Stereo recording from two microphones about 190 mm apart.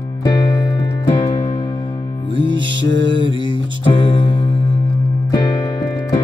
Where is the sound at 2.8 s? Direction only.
70° right (ahead or behind).